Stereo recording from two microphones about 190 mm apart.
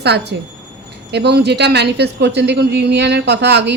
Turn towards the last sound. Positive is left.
turn(degrees=-60)  # may be behind; listen again after turning